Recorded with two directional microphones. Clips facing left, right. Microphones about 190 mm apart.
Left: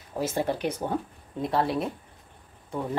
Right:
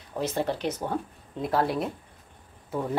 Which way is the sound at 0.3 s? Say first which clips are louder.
Left 1 dB; 10° left (ahead or behind).